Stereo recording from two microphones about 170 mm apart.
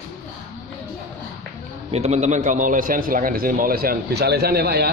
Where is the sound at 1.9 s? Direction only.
40° right (ahead or behind).